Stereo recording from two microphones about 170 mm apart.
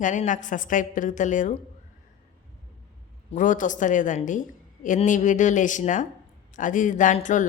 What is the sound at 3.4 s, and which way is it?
A woman's voice, 50° left (ahead or behind).